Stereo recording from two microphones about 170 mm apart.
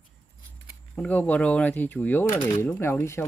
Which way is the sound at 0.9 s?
10° left (ahead or behind).